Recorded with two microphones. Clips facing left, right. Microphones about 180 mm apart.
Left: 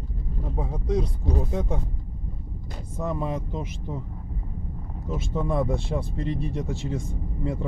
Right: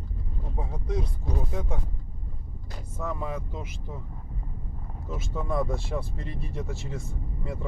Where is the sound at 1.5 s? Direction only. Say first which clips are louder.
Left 5 dB; 25° left (ahead or behind).